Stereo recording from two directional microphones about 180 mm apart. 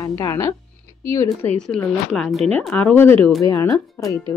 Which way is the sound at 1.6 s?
5° left (ahead or behind).